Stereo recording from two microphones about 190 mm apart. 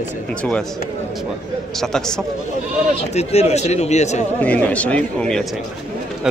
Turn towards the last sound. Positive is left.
turn(degrees=-5)  # may be behind; listen again after turning